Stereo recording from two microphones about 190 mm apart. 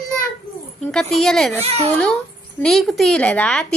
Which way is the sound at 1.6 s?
35° right (ahead or behind).